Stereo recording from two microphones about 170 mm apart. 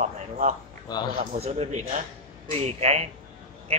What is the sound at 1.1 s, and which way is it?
A man's voice, 40° right (ahead or behind).